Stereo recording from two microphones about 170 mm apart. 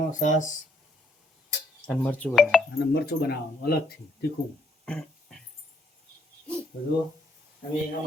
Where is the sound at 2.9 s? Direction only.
70° left (ahead or behind).